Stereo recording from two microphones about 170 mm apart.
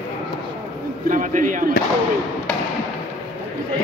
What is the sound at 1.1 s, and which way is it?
Speech, 50° right (ahead or behind).